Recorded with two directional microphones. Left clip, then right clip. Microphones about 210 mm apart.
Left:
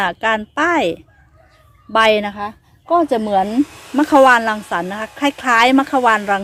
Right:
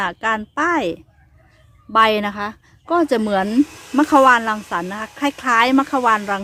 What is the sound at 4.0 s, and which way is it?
A woman's voice, centre (ahead or behind).